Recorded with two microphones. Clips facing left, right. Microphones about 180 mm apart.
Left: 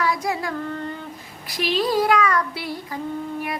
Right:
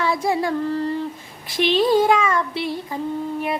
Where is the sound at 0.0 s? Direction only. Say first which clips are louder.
Right 3 dB; 25° right (ahead or behind).